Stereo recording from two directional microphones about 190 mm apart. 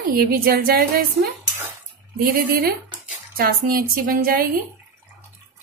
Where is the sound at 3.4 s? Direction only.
50° right (ahead or behind).